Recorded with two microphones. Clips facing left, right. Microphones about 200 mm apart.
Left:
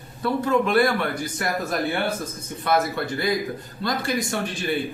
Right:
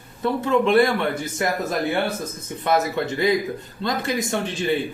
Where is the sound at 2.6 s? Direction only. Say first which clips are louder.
Right 2 dB; 20° right (ahead or behind).